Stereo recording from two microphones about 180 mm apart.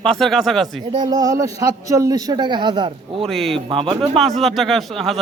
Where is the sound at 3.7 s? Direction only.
30° right (ahead or behind).